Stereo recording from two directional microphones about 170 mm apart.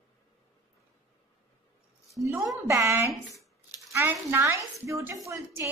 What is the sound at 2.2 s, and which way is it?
A woman's voice, 10° right (ahead or behind).